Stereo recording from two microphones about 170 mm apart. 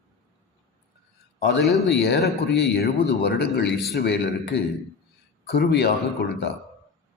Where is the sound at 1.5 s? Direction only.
75° left (ahead or behind).